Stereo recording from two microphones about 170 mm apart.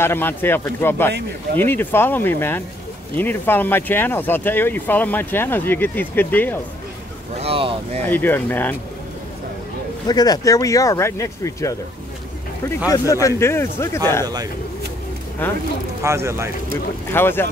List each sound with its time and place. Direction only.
0.0 s speech: 15° left (ahead or behind)
7.4 s speech: 35° right (ahead or behind)
8.0 s speech: 10° left (ahead or behind)
10.0 s speech: 25° left (ahead or behind)
13.4 s speech: 15° left (ahead or behind)
14.2 s speech: 25° right (ahead or behind)
16.0 s speech: 15° right (ahead or behind)
17.1 s speech: 15° left (ahead or behind)